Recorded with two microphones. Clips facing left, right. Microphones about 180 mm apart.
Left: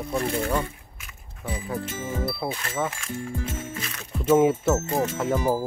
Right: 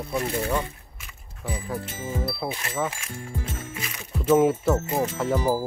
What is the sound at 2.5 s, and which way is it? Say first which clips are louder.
Speech: left 1 dB; 10° right (ahead or behind).